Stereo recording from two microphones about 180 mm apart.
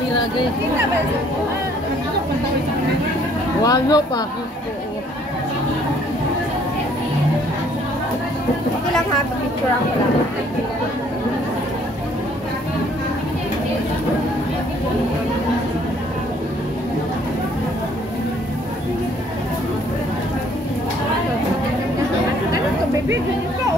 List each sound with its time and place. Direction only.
3.6 s speech: 20° left (ahead or behind)